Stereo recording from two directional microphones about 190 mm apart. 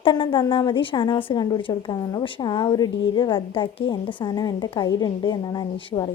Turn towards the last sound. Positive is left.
turn(degrees=20)  # may be behind; listen again after turning